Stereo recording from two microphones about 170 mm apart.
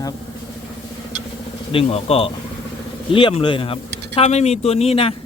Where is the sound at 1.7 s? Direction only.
35° left (ahead or behind).